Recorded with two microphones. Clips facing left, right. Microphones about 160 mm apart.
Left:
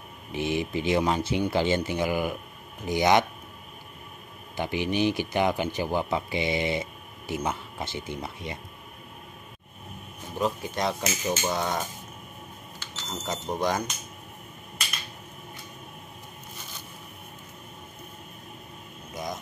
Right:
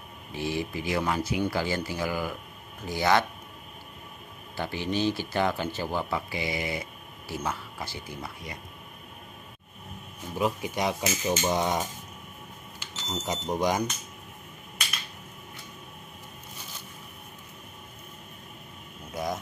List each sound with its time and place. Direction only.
0.3 s speech: 20° left (ahead or behind)
4.6 s speech: 15° left (ahead or behind)
10.3 s speech: 10° right (ahead or behind)